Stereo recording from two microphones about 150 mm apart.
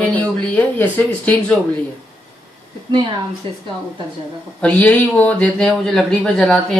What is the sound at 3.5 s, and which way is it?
Speech, 35° right (ahead or behind).